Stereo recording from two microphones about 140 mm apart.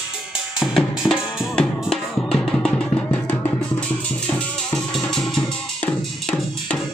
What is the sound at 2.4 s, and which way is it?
Music, 5° left (ahead or behind).